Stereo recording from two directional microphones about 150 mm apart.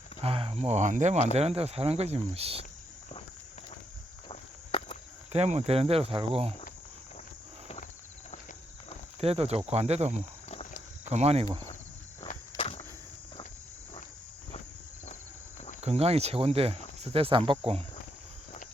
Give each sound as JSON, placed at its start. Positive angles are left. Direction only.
{"t": 0.2, "sound": "speech", "side_deg": -40}
{"t": 4.3, "sound": "walk", "side_deg": 40}
{"t": 5.3, "sound": "speech", "side_deg": -45}
{"t": 9.2, "sound": "speech", "side_deg": -45}
{"t": 10.5, "sound": "cricket", "side_deg": 50}
{"t": 11.1, "sound": "speech", "side_deg": -45}
{"t": 12.5, "sound": "insect", "side_deg": 40}
{"t": 15.8, "sound": "speech", "side_deg": -45}